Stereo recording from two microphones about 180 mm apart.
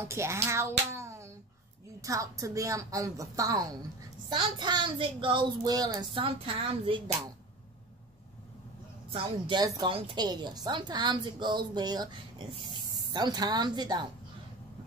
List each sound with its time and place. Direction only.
0.1 s a woman's voice: 15° right (ahead or behind); by 7.2 s 30° right (ahead or behind)
9.1 s a woman's voice: 25° right (ahead or behind)